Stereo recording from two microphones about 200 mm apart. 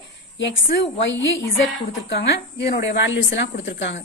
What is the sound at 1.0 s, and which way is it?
Speech, 65° left (ahead or behind).